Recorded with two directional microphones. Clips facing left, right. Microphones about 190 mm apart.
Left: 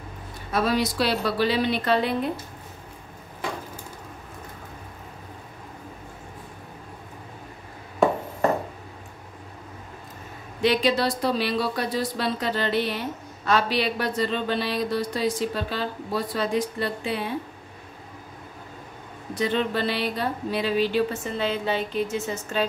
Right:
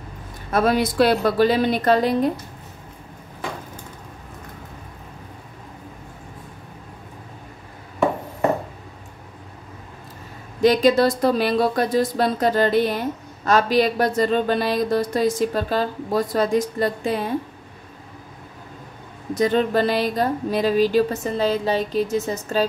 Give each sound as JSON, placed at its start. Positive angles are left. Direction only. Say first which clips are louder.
{"t": 0.5, "sound": "speech", "louder": "right 4 dB", "side_deg": -50}
{"t": 10.6, "sound": "speech", "louder": "right 6 dB", "side_deg": -45}
{"t": 19.3, "sound": "speech", "louder": "right 6 dB", "side_deg": -45}